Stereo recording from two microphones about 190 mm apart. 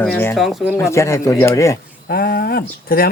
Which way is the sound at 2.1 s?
55° left (ahead or behind).